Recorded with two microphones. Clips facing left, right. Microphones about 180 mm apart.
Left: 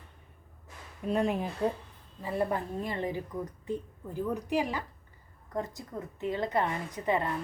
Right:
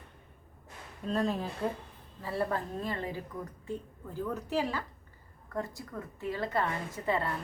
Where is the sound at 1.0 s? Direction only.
10° left (ahead or behind).